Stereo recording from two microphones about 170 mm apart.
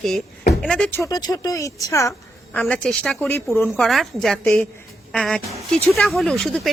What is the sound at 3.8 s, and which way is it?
Speech, centre (ahead or behind).